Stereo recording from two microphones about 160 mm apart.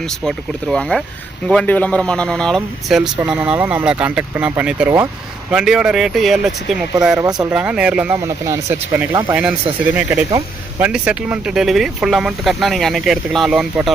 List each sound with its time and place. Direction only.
0.3 s speech: 5° left (ahead or behind)
7.2 s speech: 25° right (ahead or behind)
7.5 s speech: 5° right (ahead or behind)
9.3 s speech: 10° right (ahead or behind)